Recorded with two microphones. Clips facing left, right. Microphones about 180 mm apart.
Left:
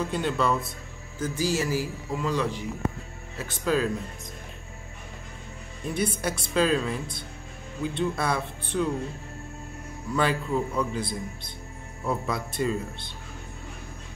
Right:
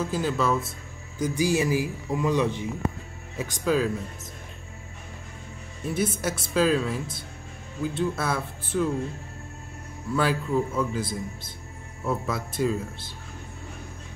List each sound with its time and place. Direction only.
0.0 s speech: centre (ahead or behind)
1.2 s a man's voice: 15° right (ahead or behind)
3.3 s a man's voice: 10° right (ahead or behind)
5.9 s speech: 5° right (ahead or behind)
10.1 s speech: 5° right (ahead or behind)